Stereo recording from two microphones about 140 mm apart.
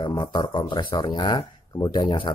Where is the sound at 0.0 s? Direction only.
30° left (ahead or behind).